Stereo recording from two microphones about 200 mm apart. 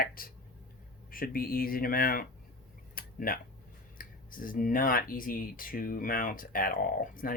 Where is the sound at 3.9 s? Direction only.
45° left (ahead or behind).